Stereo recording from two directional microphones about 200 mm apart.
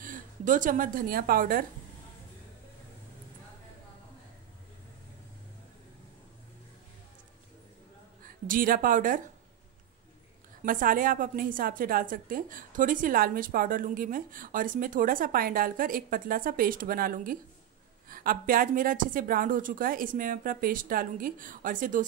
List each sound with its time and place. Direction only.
0.0 s a woman's voice: 40° right (ahead or behind)
8.5 s a woman's voice: 45° right (ahead or behind)
10.6 s a woman's voice: 45° right (ahead or behind)